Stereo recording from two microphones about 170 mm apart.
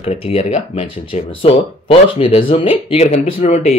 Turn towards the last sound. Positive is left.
turn(degrees=40)  # may be behind; listen again after turning